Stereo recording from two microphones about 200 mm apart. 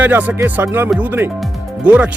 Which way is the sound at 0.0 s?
10° right (ahead or behind).